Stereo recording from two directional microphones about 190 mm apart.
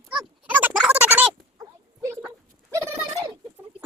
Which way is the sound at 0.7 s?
5° right (ahead or behind).